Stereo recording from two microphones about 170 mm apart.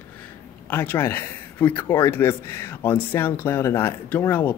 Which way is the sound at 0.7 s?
10° left (ahead or behind).